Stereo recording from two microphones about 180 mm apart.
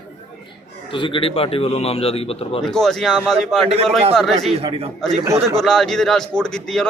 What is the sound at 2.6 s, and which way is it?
A man's voice, 5° left (ahead or behind).